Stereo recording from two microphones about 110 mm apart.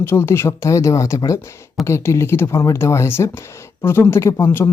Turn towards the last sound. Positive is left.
turn(degrees=20)  # may be behind; listen again after turning